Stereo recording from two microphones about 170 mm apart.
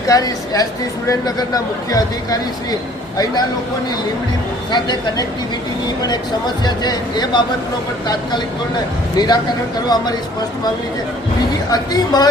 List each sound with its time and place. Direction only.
0.1 s speech: 20° left (ahead or behind)
4.7 s speech: 25° left (ahead or behind)
6.7 s speech: 25° left (ahead or behind)
9.1 s speech: 25° left (ahead or behind)
11.7 s speech: 25° left (ahead or behind)